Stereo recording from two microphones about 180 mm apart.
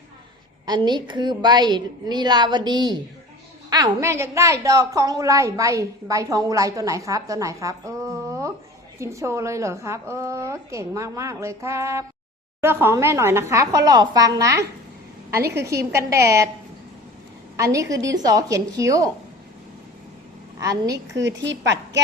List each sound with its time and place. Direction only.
0.9 s a woman's voice: 25° right (ahead or behind)
17.6 s a woman's voice: 20° right (ahead or behind)
20.6 s a woman's voice: 20° right (ahead or behind)
21.2 s a woman's voice: 80° right